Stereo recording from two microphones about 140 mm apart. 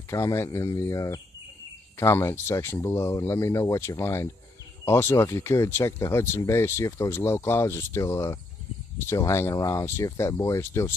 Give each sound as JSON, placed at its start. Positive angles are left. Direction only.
{"t": 0.1, "sound": "speech", "side_deg": 20}